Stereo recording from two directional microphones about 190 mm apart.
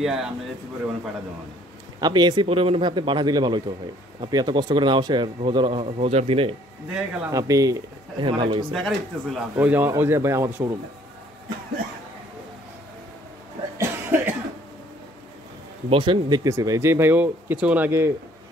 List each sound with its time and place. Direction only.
0.0 s speech: 5° right (ahead or behind)
2.0 s speech: 20° right (ahead or behind)
6.9 s speech: 5° right (ahead or behind)
7.2 s speech: 15° right (ahead or behind)
8.7 s speech: centre (ahead or behind); by 10.8 s 15° right (ahead or behind)
13.7 s cough: 10° right (ahead or behind)
15.9 s speech: 25° right (ahead or behind)